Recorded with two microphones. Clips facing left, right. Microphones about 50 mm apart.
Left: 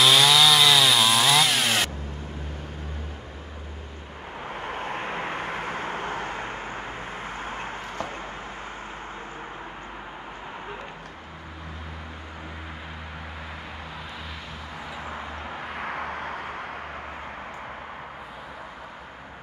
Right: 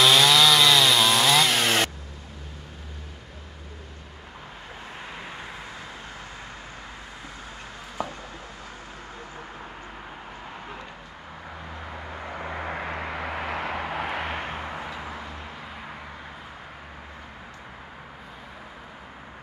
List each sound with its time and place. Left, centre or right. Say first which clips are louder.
0.0 s chainsaw: even; centre
4.6 s vehicle: left 10 dB; left
7.4 s a sound: left 8 dB; left
8.0 s a sound: right 3 dB; centre
12.4 s vehicle: right 10 dB; right
15.7 s vehicle: left 8 dB; left